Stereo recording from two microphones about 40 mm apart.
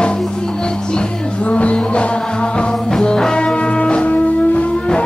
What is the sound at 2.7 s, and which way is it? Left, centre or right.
Music, centre.